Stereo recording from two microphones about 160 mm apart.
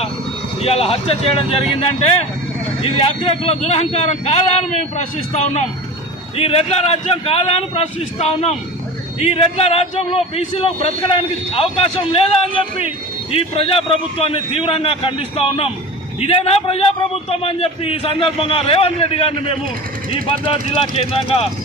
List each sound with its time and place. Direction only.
0.6 s a man's voice: 40° left (ahead or behind)
2.8 s a man's voice: 40° left (ahead or behind)
13.3 s a man's voice: 35° left (ahead or behind)